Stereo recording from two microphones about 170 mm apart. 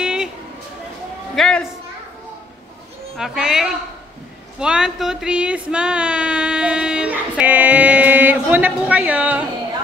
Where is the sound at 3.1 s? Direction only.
5° right (ahead or behind).